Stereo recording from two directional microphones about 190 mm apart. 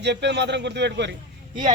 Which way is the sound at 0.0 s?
65° right (ahead or behind).